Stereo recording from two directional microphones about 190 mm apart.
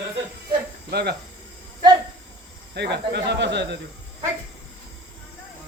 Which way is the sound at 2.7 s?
60° right (ahead or behind).